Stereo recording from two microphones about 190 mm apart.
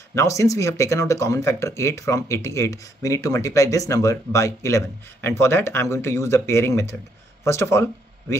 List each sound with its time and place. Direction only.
0.1 s speech: 15° left (ahead or behind)